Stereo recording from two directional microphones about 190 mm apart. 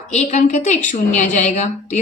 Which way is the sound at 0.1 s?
40° left (ahead or behind).